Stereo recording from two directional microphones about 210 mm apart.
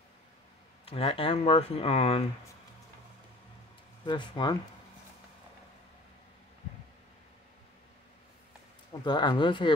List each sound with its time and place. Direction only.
0.8 s speech: 25° left (ahead or behind)
4.0 s speech: 20° left (ahead or behind)
9.0 s speech: 20° left (ahead or behind)